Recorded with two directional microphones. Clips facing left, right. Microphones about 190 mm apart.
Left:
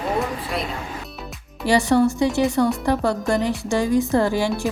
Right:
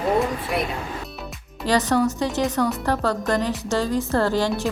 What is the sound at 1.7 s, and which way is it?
A woman's voice, 10° left (ahead or behind).